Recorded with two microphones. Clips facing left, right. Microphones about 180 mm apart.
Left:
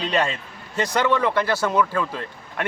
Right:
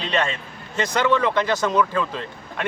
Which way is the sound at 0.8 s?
10° left (ahead or behind).